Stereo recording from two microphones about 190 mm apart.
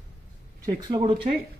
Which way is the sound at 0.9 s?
20° right (ahead or behind).